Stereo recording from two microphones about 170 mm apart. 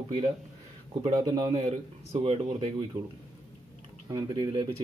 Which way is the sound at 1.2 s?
25° right (ahead or behind).